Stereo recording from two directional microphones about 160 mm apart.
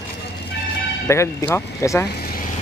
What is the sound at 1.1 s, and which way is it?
Speech, 15° left (ahead or behind).